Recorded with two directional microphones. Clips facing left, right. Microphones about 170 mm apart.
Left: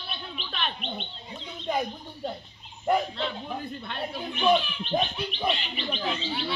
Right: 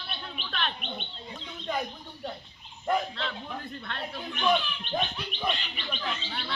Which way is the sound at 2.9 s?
10° left (ahead or behind).